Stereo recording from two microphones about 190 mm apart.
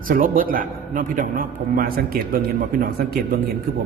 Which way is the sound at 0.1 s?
45° right (ahead or behind).